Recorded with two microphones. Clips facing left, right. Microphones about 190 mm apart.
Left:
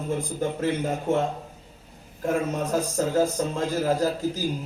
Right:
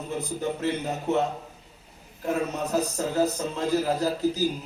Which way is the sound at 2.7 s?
45° left (ahead or behind).